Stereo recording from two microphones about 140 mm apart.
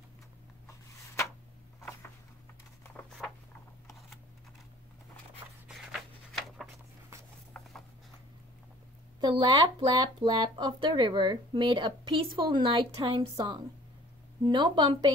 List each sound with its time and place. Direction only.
5.7 s writing: centre (ahead or behind)
9.2 s speech: 35° right (ahead or behind)
14.4 s speech: 35° right (ahead or behind)